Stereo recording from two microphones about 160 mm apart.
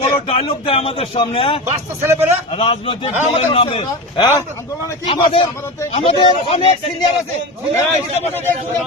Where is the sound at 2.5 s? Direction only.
35° left (ahead or behind).